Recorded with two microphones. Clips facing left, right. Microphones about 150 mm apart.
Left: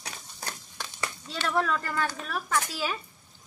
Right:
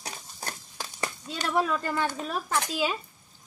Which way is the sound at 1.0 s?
15° right (ahead or behind).